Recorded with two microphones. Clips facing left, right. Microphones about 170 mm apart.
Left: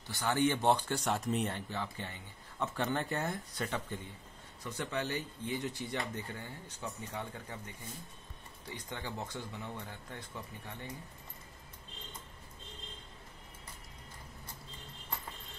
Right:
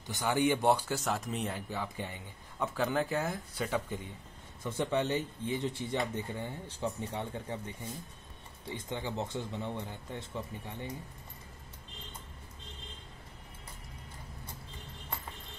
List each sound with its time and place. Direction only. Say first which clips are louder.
0.0 s speech: right 1 dB; 15° right (ahead or behind); by 1.6 s centre (ahead or behind)
1.7 s speech: right 2 dB; 15° right (ahead or behind)
4.6 s speech: right 6 dB; 25° right (ahead or behind)